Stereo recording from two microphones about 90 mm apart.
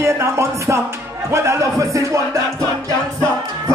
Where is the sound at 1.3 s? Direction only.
30° right (ahead or behind).